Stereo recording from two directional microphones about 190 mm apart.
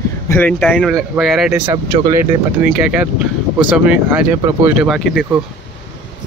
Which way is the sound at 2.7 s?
5° right (ahead or behind).